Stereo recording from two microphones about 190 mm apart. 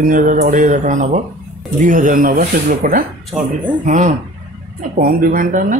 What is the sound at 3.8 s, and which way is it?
Speech, 40° right (ahead or behind).